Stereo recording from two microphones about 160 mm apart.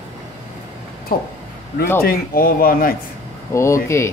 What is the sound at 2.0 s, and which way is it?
Speech, 70° left (ahead or behind).